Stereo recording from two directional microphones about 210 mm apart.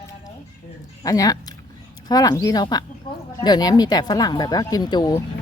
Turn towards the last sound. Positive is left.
turn(degrees=15)  # may be behind; listen again after turning